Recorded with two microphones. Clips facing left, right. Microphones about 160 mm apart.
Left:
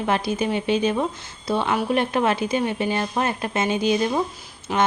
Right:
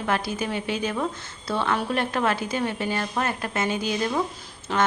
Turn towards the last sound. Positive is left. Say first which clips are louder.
# left 2 dB
turn(degrees=15)  # may be behind; listen again after turning